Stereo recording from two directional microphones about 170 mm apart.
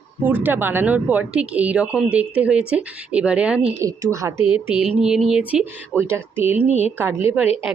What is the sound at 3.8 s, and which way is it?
Speech, 15° right (ahead or behind).